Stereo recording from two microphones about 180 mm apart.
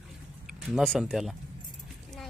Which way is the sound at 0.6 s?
Centre (ahead or behind).